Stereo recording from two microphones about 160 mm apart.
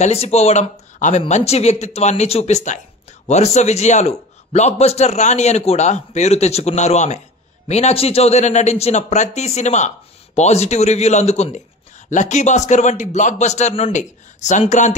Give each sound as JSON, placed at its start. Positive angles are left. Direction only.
{"t": 0.0, "sound": "a man's voice", "side_deg": 40}